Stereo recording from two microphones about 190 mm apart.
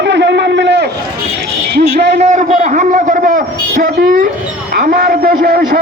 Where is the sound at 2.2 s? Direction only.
40° right (ahead or behind).